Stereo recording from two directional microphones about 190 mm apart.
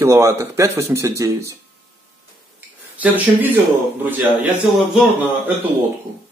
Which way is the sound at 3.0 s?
10° right (ahead or behind).